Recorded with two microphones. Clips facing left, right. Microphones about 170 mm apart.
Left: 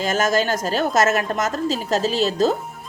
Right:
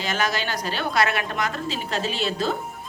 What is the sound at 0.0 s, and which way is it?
A woman's voice, 45° left (ahead or behind).